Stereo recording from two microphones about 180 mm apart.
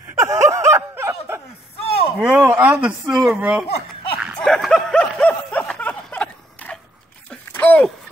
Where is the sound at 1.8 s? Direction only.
30° left (ahead or behind).